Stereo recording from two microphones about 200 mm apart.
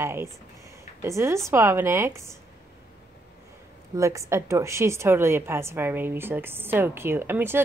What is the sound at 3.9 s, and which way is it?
A woman's voice, 15° right (ahead or behind).